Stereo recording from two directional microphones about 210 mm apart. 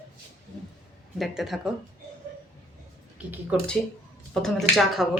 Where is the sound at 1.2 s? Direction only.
Centre (ahead or behind).